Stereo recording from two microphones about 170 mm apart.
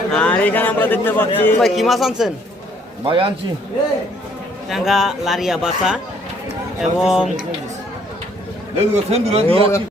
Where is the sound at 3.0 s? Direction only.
30° right (ahead or behind).